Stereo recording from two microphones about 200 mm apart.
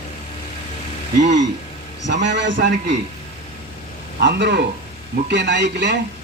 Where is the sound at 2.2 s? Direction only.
65° right (ahead or behind).